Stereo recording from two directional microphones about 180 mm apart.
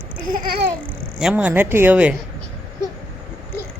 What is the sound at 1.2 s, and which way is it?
Speech, 5° right (ahead or behind).